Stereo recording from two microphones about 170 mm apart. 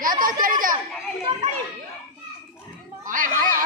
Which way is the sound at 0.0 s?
55° right (ahead or behind).